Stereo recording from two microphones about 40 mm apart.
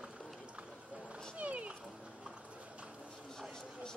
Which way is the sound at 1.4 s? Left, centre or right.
Right.